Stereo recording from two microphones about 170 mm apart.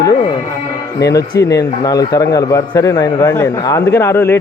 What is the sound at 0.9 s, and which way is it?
A man's voice, 20° left (ahead or behind).